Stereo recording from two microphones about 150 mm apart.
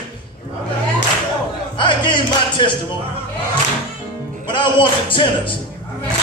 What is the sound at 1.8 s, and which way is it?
Music, 30° left (ahead or behind).